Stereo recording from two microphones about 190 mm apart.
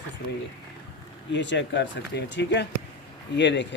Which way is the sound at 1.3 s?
70° left (ahead or behind).